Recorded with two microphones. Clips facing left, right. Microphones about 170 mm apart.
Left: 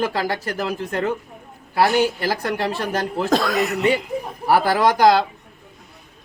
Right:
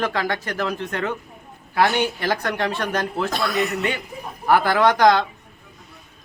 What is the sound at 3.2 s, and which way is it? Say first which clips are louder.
Speech: left 5 dB; 90° left.